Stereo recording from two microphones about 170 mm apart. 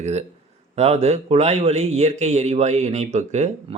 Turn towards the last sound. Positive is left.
turn(degrees=-40)  # may be behind; listen again after turning